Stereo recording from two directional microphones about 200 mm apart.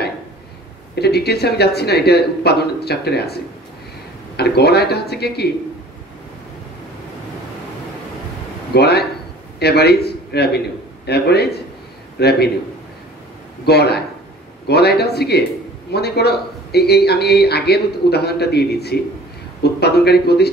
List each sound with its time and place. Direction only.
0.9 s a man's voice: 55° left (ahead or behind)
4.4 s a man's voice: 55° left (ahead or behind)
8.7 s a man's voice: 55° left (ahead or behind)
13.7 s a man's voice: 55° left (ahead or behind)